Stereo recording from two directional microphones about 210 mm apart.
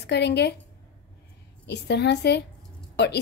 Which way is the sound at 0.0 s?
55° left (ahead or behind).